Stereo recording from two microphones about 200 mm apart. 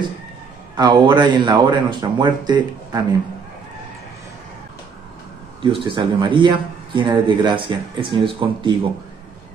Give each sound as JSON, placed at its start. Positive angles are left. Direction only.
{"t": 0.7, "sound": "speech", "side_deg": -20}
{"t": 5.6, "sound": "speech", "side_deg": -25}